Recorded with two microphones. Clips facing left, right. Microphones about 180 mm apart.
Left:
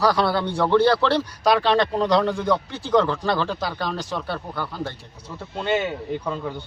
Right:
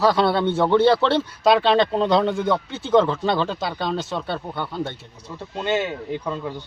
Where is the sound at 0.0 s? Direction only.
25° right (ahead or behind).